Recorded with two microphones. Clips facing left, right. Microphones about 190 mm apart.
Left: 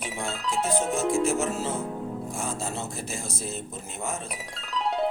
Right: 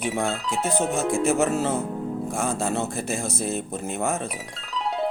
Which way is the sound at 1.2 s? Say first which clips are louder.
Right 5 dB; 60° right (ahead or behind).